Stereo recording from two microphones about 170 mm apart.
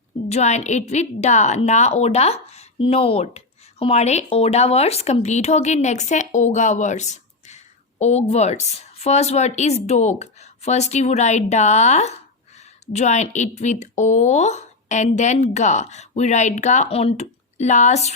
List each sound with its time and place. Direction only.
0.3 s a woman's voice: 40° left (ahead or behind)